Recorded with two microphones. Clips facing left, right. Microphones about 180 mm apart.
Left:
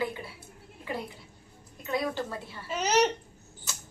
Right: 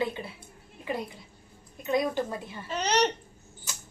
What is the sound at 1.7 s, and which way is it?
Speech, 20° right (ahead or behind).